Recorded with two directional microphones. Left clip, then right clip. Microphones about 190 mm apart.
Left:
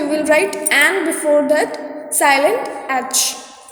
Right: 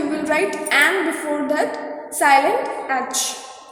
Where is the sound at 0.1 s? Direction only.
45° left (ahead or behind).